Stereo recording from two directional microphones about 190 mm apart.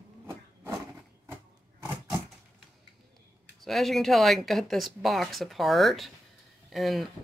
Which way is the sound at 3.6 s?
Centre (ahead or behind).